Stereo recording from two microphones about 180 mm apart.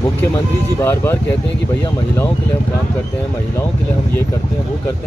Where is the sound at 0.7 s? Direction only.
15° left (ahead or behind).